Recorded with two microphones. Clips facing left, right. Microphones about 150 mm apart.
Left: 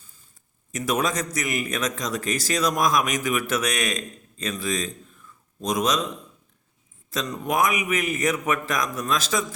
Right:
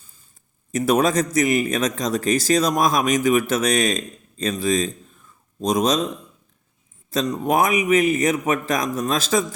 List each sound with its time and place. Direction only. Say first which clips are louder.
0.7 s a man's voice: right 6 dB; 30° right (ahead or behind)
7.1 s a man's voice: right 6 dB; 30° right (ahead or behind)